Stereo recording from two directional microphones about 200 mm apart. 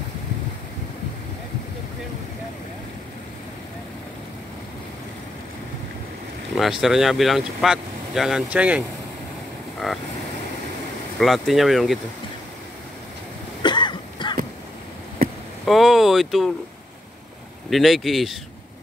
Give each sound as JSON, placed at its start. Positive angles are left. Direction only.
{"t": 6.5, "sound": "speech", "side_deg": 0}
{"t": 9.8, "sound": "waves", "side_deg": 0}
{"t": 11.1, "sound": "speech", "side_deg": 0}
{"t": 13.6, "sound": "cough", "side_deg": 25}
{"t": 15.6, "sound": "speech", "side_deg": 0}
{"t": 17.6, "sound": "speech", "side_deg": 0}